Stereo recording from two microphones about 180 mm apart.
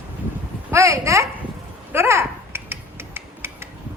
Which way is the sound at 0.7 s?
15° right (ahead or behind).